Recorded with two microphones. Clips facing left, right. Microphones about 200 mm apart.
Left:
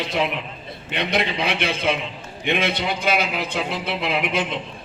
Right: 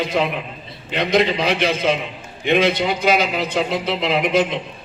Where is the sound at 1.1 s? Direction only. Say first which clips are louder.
Right 7 dB; 55° left (ahead or behind).